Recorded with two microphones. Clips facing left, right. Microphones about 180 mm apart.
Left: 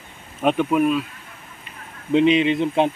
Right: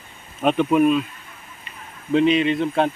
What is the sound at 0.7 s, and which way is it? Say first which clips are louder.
Speech: right 2 dB; centre (ahead or behind).